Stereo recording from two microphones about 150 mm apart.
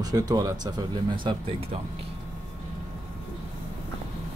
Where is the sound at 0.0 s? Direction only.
25° right (ahead or behind).